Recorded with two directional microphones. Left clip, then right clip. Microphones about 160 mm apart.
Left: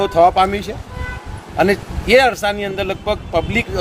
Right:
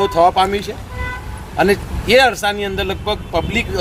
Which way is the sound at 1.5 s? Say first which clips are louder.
Right 1 dB; 30° left (ahead or behind).